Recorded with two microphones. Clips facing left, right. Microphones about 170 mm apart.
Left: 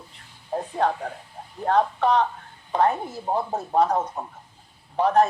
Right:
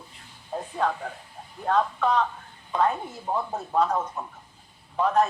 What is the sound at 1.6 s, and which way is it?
Speech, 50° left (ahead or behind).